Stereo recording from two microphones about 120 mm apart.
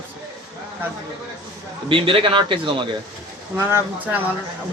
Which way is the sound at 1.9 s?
45° right (ahead or behind).